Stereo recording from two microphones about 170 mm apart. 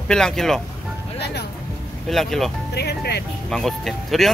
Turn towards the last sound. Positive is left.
turn(degrees=0)  # may be behind; listen again after turning